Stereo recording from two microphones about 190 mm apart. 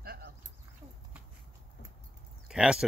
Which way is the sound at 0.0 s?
55° right (ahead or behind).